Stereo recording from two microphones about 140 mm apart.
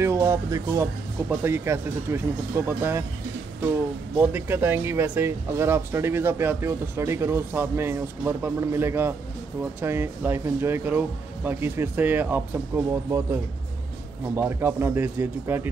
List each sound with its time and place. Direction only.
0.0 s speech: 20° right (ahead or behind)
4.2 s speech: 15° right (ahead or behind)